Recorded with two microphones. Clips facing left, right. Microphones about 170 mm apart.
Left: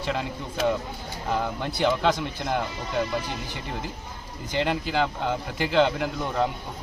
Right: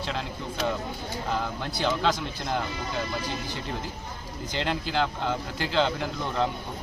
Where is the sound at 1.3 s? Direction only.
15° left (ahead or behind).